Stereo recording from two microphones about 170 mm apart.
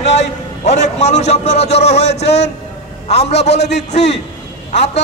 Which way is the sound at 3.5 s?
80° left.